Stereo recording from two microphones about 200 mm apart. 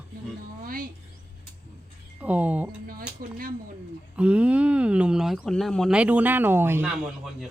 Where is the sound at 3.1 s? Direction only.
45° right (ahead or behind).